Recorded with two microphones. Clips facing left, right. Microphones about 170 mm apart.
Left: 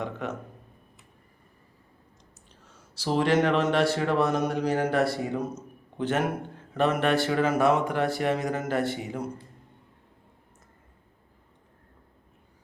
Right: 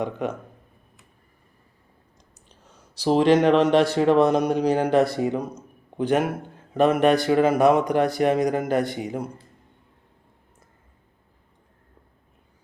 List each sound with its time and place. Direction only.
0.0 s speech: 15° right (ahead or behind)
2.9 s speech: 20° right (ahead or behind)